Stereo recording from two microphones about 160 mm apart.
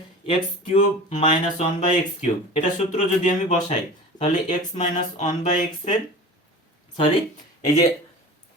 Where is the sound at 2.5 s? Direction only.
45° left (ahead or behind).